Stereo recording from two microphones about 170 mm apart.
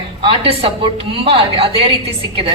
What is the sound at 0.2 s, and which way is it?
A woman's voice, 35° right (ahead or behind).